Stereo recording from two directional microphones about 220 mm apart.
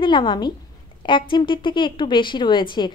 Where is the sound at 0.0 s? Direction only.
20° left (ahead or behind).